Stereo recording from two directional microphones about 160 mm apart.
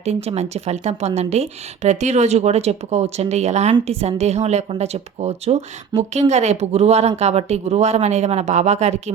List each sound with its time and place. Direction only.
0.0 s a woman's voice: 40° right (ahead or behind)